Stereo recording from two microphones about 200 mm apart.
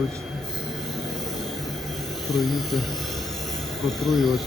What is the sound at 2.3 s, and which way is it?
Speech, centre (ahead or behind).